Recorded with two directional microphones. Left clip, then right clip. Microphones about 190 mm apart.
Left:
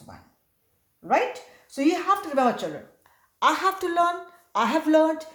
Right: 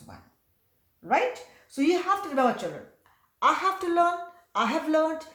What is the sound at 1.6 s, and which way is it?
A woman's voice, 35° left (ahead or behind).